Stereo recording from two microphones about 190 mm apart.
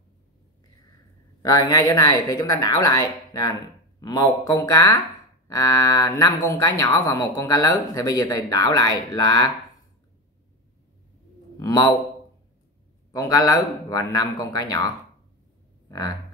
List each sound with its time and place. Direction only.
1.4 s speech: 20° left (ahead or behind)
11.6 s a man's voice: 20° left (ahead or behind)
13.1 s speech: 20° left (ahead or behind)